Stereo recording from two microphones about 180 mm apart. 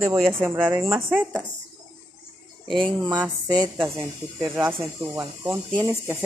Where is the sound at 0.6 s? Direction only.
10° right (ahead or behind).